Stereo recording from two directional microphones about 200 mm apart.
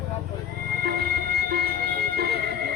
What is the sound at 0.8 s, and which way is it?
Train, 50° right (ahead or behind).